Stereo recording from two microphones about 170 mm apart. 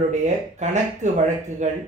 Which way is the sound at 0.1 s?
45° right (ahead or behind).